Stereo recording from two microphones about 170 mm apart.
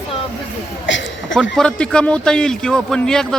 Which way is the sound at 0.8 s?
90° left.